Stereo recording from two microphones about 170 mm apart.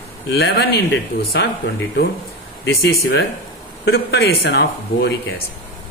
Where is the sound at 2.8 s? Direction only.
70° left (ahead or behind).